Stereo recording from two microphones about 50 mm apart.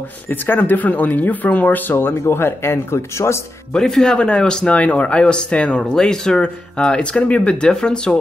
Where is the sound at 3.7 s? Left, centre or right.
Centre.